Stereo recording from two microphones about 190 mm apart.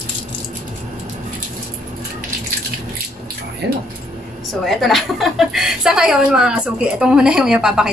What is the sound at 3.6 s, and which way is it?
Speech, 60° right (ahead or behind).